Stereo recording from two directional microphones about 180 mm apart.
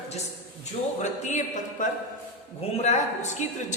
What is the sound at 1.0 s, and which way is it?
Music, 40° left (ahead or behind).